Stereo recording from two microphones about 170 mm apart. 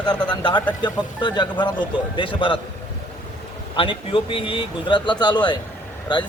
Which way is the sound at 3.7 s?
30° left (ahead or behind).